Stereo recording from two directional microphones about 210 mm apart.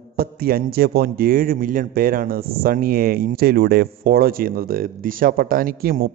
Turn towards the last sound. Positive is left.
turn(degrees=-45)  # may be behind; listen again after turning